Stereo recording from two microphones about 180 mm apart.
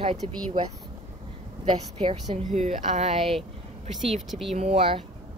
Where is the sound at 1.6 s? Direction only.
30° right (ahead or behind).